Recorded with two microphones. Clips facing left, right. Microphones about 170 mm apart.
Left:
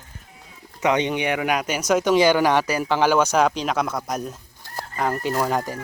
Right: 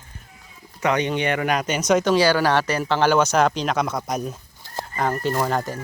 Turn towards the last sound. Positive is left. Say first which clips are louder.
# even
turn(degrees=10)  # may be behind; listen again after turning